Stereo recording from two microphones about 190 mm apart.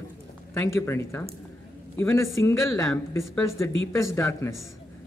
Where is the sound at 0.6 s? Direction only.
15° left (ahead or behind).